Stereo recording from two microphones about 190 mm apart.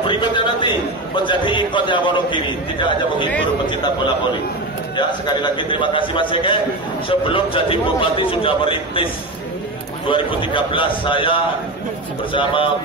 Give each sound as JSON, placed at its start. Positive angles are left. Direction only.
{"t": 0.0, "sound": "a man's voice", "side_deg": 25}
{"t": 4.9, "sound": "a man's voice", "side_deg": 25}